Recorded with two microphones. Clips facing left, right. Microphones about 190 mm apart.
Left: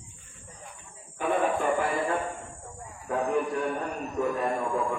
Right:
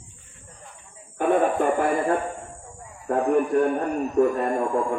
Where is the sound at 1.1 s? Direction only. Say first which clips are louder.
Right 6 dB; 50° right (ahead or behind).